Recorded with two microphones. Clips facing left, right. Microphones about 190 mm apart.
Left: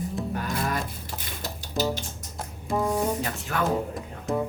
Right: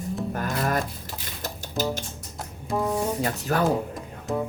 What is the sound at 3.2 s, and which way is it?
Speech, 40° right (ahead or behind).